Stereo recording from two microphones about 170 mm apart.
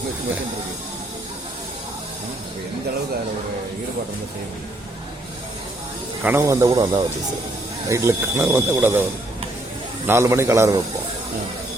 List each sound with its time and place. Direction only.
6.2 s speech: 15° right (ahead or behind)
10.1 s speech: 15° right (ahead or behind)